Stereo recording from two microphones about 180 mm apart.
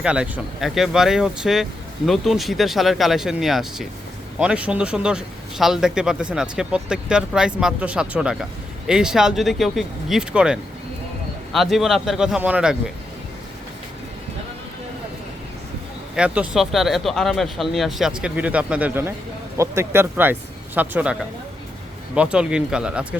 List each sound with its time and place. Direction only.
0.0 s speech: 5° right (ahead or behind)
16.1 s speech: 5° right (ahead or behind)